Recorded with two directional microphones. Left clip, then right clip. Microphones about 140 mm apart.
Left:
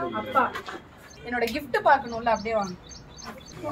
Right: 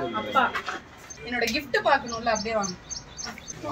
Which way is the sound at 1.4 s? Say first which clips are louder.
Right 1 dB; 5° left (ahead or behind).